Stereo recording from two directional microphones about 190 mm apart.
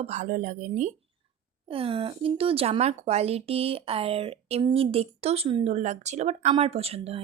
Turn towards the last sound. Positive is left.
turn(degrees=-30)  # may be behind; listen again after turning